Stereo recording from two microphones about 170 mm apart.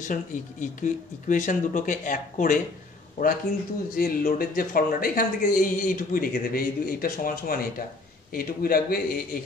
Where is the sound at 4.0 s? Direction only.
55° left (ahead or behind).